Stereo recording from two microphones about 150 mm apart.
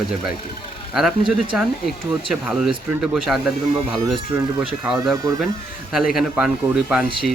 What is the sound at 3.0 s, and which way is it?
Speech, centre (ahead or behind).